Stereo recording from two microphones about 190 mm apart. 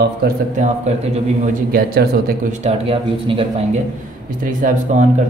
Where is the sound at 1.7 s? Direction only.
55° right (ahead or behind).